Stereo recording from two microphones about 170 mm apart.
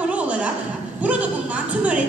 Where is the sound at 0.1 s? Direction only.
5° right (ahead or behind).